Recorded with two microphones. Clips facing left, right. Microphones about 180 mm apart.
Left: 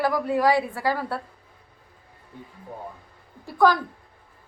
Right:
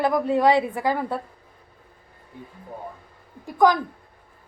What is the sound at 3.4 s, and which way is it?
Speech, 15° right (ahead or behind).